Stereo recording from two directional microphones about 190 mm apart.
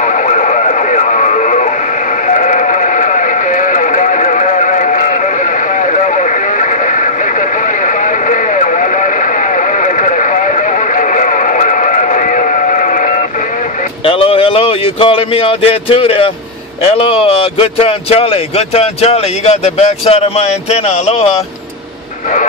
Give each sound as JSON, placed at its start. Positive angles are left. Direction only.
{"t": 0.0, "sound": "radio", "side_deg": 40}
{"t": 2.2, "sound": "sheep", "side_deg": 40}
{"t": 5.8, "sound": "radio", "side_deg": 40}
{"t": 11.0, "sound": "a sound", "side_deg": 45}
{"t": 14.0, "sound": "speech", "side_deg": 30}